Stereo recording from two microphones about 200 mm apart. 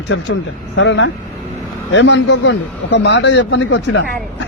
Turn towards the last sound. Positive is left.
turn(degrees=65)  # may be behind; listen again after turning